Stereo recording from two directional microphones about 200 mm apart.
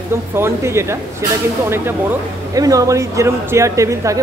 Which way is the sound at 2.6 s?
15° right (ahead or behind).